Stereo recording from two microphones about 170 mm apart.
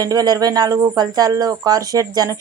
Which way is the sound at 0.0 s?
20° right (ahead or behind).